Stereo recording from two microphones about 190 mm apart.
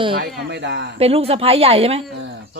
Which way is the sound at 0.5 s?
65° right (ahead or behind).